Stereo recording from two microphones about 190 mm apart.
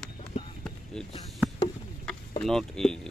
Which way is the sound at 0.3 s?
35° left (ahead or behind).